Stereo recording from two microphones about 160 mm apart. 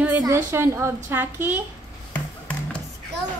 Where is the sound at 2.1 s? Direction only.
10° left (ahead or behind).